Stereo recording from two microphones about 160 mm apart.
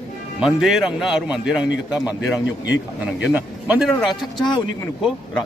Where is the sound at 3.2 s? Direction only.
10° right (ahead or behind).